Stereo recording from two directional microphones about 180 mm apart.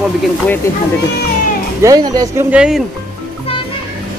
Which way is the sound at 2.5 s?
5° right (ahead or behind).